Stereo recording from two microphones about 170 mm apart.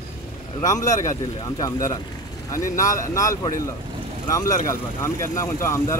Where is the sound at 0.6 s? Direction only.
20° left (ahead or behind).